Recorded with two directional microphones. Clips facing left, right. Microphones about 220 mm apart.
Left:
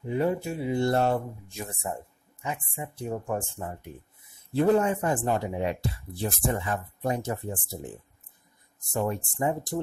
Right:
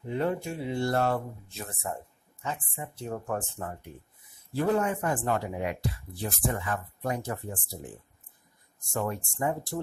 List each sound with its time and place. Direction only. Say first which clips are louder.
0.1 s speech: left 3 dB; 10° left (ahead or behind)
0.8 s speech: left 1 dB; 20° left (ahead or behind)
4.6 s speech: left 4 dB; 25° left (ahead or behind)
8.9 s speech: left 3 dB; 20° left (ahead or behind)